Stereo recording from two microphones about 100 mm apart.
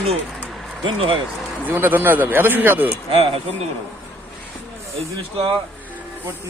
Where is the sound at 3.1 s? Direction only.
70° right (ahead or behind).